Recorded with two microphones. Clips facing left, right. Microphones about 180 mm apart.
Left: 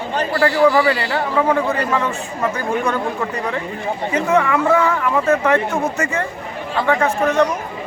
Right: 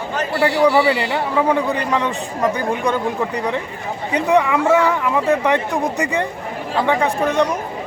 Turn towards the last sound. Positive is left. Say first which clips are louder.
# left 1 dB
turn(degrees=-15)  # may be behind; listen again after turning